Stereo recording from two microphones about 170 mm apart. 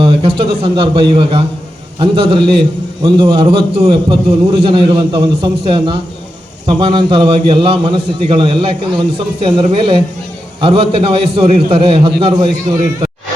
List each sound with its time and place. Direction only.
0.0 s a man's voice: 30° right (ahead or behind)